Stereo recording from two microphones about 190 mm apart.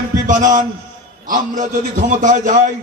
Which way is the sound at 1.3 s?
45° right (ahead or behind).